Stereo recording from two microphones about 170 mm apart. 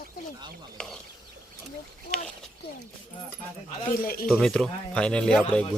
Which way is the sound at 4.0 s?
60° left (ahead or behind).